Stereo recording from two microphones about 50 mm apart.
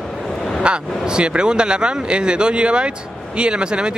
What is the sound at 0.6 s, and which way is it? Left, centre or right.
A man's voice, centre.